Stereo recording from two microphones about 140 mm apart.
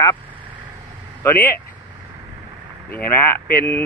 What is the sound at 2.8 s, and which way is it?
Speech, 15° left (ahead or behind).